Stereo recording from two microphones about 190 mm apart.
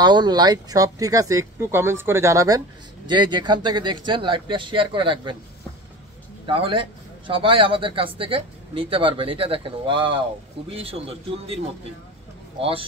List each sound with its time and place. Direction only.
0.0 s a man's voice: 20° right (ahead or behind)
6.4 s a man's voice: 30° right (ahead or behind)